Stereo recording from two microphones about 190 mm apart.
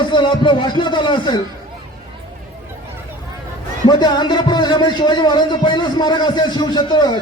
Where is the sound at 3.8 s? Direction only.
25° left (ahead or behind).